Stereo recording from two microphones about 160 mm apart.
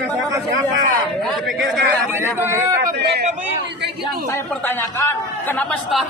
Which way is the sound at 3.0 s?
90° right.